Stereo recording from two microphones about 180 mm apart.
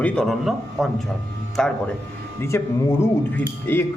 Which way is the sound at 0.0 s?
5° left (ahead or behind).